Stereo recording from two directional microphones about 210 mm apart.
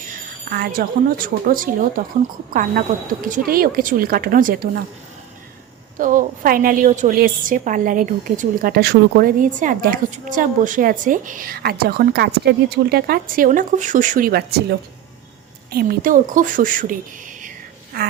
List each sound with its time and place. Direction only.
0.0 s a woman's voice: 40° right (ahead or behind)
6.0 s a woman's voice: 40° right (ahead or behind)